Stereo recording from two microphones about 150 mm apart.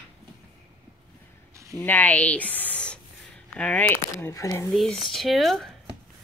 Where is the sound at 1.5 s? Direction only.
20° right (ahead or behind).